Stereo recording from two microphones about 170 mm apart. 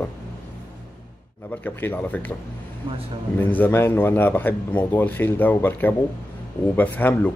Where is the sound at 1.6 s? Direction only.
10° left (ahead or behind).